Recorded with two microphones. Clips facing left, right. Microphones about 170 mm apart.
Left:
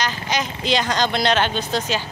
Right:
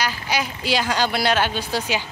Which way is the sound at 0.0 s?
10° right (ahead or behind).